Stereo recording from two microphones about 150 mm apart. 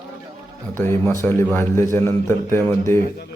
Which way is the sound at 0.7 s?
15° left (ahead or behind).